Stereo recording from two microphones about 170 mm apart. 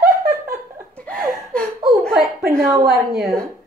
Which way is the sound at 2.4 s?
15° right (ahead or behind).